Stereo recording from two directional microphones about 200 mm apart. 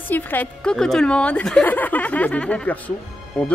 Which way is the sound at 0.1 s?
10° left (ahead or behind).